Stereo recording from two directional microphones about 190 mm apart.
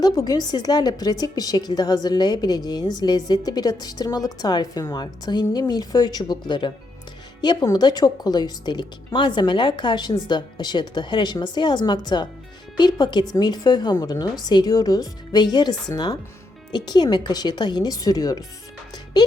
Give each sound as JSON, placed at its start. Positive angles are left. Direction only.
{"t": 0.0, "sound": "a woman's voice", "side_deg": 20}